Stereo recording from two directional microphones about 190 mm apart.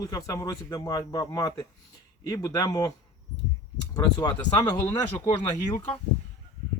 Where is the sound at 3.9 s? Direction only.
20° left (ahead or behind).